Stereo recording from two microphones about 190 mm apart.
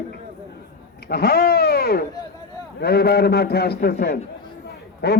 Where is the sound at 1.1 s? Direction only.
55° left (ahead or behind).